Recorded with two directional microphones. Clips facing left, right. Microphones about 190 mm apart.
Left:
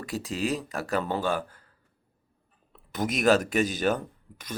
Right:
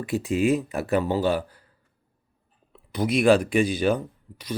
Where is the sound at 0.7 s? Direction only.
15° right (ahead or behind).